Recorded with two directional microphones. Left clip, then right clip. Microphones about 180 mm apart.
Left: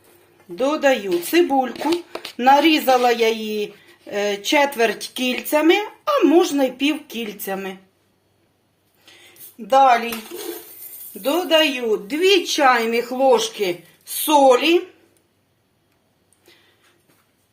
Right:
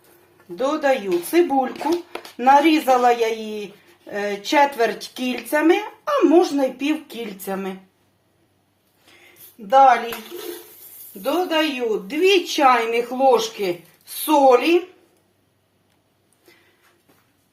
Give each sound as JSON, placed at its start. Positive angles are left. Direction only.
{"t": 0.5, "sound": "speech", "side_deg": 30}
{"t": 9.6, "sound": "a woman's voice", "side_deg": 35}
{"t": 11.2, "sound": "a woman's voice", "side_deg": 35}